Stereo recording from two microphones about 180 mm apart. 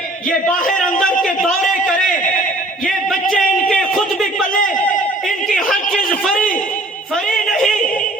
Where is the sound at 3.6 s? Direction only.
Centre (ahead or behind).